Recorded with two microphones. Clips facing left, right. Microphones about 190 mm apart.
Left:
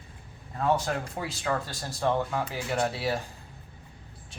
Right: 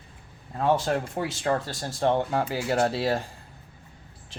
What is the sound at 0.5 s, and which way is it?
Speech, 30° right (ahead or behind).